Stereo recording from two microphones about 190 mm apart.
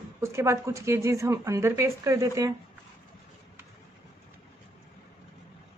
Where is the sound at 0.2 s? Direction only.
15° right (ahead or behind).